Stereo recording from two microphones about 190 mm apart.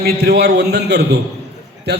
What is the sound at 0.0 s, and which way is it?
A man's voice, 55° right (ahead or behind).